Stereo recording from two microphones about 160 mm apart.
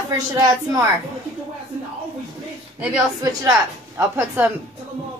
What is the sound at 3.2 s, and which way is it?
A woman's voice, 20° right (ahead or behind).